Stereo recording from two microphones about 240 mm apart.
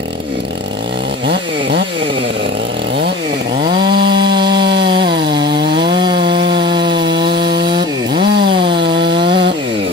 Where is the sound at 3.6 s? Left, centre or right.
Centre.